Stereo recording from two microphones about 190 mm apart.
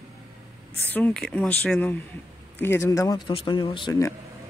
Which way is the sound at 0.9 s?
5° left (ahead or behind).